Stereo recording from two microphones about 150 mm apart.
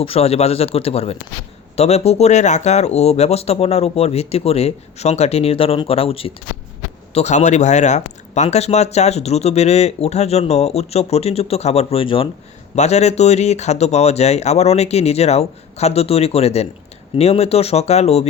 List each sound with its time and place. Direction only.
0.0 s a man's voice: 40° left (ahead or behind)
12.7 s speech: 45° left (ahead or behind)